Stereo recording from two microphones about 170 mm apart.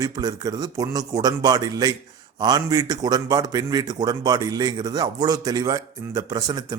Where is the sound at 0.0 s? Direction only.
20° right (ahead or behind).